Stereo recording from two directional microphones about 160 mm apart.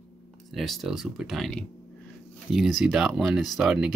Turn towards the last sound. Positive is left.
turn(degrees=-5)  # may be behind; listen again after turning